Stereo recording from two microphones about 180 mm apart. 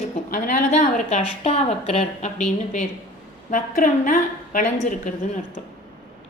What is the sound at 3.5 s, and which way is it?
A woman's voice, 45° left (ahead or behind).